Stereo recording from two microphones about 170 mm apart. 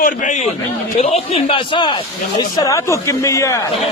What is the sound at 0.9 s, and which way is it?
A man's voice, 40° left (ahead or behind).